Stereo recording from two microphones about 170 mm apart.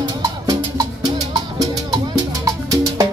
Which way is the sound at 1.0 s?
25° right (ahead or behind).